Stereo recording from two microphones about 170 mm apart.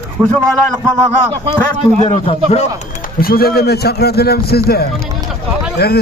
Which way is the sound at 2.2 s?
40° left (ahead or behind).